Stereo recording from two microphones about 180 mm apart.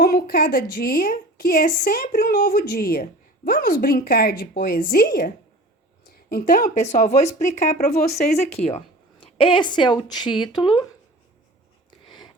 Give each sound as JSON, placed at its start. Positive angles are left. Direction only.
{"t": 0.0, "sound": "a woman's voice", "side_deg": 55}